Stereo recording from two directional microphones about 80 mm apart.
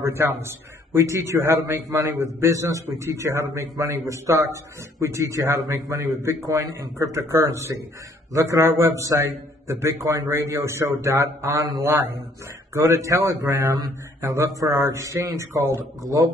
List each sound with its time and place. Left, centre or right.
0.0 s a man's voice: right